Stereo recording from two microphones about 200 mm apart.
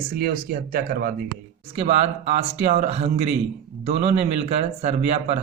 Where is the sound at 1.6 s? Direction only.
30° right (ahead or behind).